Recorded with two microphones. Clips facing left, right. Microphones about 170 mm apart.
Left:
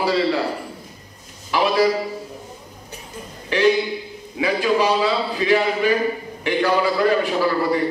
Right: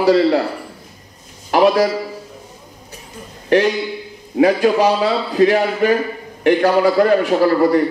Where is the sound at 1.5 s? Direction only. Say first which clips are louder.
Right 5 dB; 55° right (ahead or behind).